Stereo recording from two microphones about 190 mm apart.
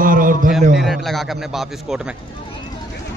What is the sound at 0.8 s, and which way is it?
A man's voice, centre (ahead or behind).